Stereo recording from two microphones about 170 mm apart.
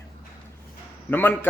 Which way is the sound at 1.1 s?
10° left (ahead or behind).